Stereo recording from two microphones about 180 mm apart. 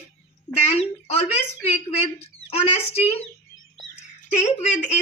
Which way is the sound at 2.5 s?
35° left (ahead or behind).